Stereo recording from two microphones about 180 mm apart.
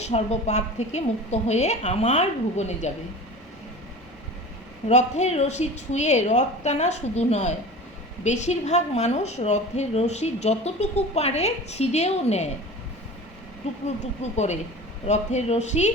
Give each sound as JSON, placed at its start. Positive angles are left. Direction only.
{"t": 0.0, "sound": "a woman's voice", "side_deg": 35}
{"t": 4.9, "sound": "a woman's voice", "side_deg": 40}
{"t": 13.8, "sound": "a woman's voice", "side_deg": 40}